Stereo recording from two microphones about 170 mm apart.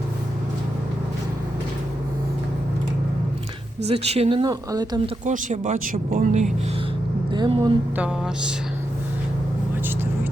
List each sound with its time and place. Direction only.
3.8 s speech: 35° right (ahead or behind)
5.2 s speech: 50° right (ahead or behind)
7.3 s speech: 25° right (ahead or behind)
7.9 s a sound: 5° right (ahead or behind)